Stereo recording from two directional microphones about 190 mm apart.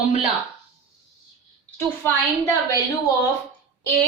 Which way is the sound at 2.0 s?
15° left (ahead or behind).